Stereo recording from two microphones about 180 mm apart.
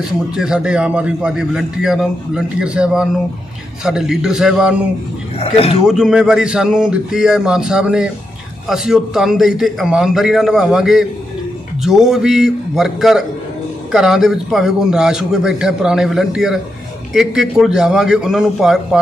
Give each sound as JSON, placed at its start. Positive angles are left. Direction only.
{"t": 0.4, "sound": "a man's voice", "side_deg": -5}
{"t": 5.4, "sound": "speech", "side_deg": 35}
{"t": 5.9, "sound": "a man's voice", "side_deg": -5}